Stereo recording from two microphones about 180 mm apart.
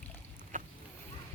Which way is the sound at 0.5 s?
45° right (ahead or behind).